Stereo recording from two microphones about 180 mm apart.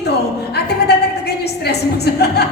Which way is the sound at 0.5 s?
65° left (ahead or behind).